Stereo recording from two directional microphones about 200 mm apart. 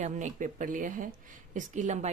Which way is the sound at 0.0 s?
35° right (ahead or behind).